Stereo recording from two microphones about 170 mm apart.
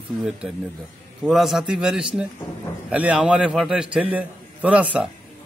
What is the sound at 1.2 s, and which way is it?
A man's voice, centre (ahead or behind).